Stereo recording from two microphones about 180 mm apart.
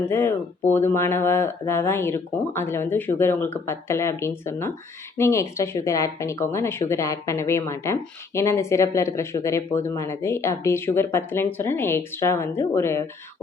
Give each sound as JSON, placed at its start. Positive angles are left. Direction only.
{"t": 0.0, "sound": "speech", "side_deg": 15}